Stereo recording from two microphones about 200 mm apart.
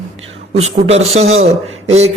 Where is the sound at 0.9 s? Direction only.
30° right (ahead or behind).